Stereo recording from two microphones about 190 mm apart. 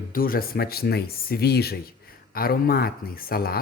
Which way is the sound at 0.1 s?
50° left (ahead or behind).